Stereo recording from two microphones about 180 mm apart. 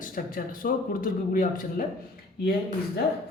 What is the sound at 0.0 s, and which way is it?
Speech, 50° left (ahead or behind).